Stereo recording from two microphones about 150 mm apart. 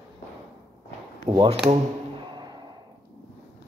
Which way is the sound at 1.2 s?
30° right (ahead or behind).